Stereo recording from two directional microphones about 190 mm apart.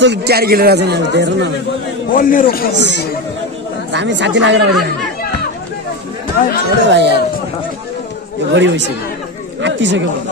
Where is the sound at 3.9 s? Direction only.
70° right (ahead or behind).